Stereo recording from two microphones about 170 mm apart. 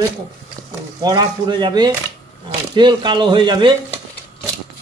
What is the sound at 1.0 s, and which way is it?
Speech, 25° right (ahead or behind).